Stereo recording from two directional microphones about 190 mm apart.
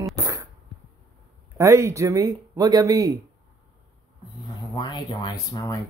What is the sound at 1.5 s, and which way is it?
Speech, 15° right (ahead or behind).